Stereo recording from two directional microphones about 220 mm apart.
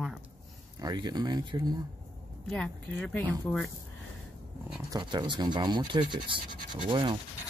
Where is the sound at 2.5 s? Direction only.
5° left (ahead or behind).